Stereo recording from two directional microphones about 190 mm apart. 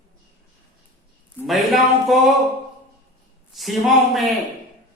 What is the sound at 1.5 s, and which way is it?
Speech, centre (ahead or behind).